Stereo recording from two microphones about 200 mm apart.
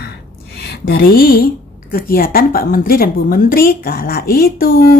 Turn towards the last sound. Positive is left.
turn(degrees=45)  # may be behind; listen again after turning